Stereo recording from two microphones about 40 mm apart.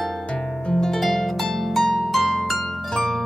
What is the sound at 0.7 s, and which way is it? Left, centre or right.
Harp, centre.